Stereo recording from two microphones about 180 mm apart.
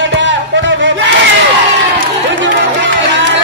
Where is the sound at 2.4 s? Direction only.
90° right.